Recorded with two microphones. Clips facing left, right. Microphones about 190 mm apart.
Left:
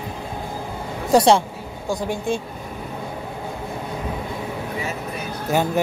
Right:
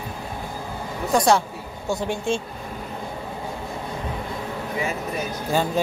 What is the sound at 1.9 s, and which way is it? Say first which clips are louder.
Speech: left 1 dB; 15° left (ahead or behind).